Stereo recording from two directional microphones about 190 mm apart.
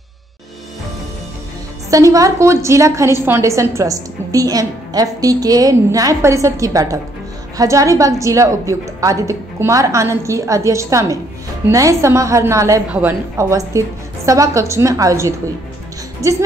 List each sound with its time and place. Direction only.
1.9 s a woman's voice: 15° right (ahead or behind)